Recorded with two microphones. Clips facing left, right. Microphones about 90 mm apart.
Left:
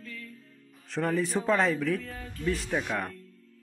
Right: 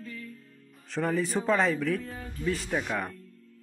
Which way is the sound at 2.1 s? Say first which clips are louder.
Right 1 dB; 15° right (ahead or behind).